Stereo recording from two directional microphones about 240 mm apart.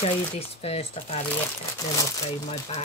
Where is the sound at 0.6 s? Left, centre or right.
Left.